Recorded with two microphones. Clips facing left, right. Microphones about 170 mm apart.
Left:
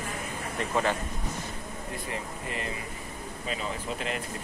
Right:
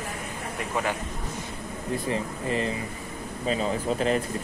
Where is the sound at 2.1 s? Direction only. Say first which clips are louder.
Right 9 dB; 30° right (ahead or behind).